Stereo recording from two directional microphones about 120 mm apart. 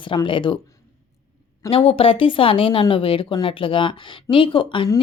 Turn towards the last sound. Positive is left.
turn(degrees=45)  # may be behind; listen again after turning